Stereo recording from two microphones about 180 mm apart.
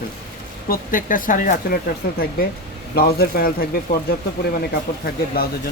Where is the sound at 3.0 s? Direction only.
60° left (ahead or behind).